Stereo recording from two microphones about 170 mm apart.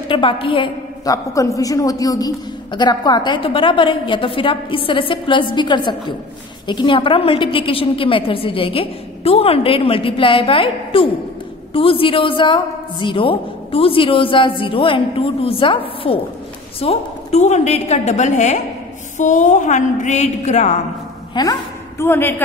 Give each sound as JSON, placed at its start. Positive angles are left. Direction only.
{"t": 0.1, "sound": "a woman's voice", "side_deg": 30}
{"t": 1.1, "sound": "a woman's voice", "side_deg": 20}
{"t": 21.4, "sound": "a woman's voice", "side_deg": 20}